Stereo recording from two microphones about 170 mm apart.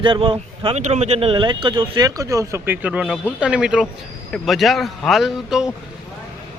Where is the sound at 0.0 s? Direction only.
30° right (ahead or behind); by 5.7 s 5° right (ahead or behind).